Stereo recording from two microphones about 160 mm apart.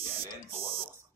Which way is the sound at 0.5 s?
40° right (ahead or behind).